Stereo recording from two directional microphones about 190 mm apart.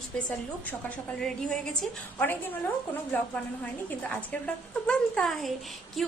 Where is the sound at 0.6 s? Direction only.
5° left (ahead or behind).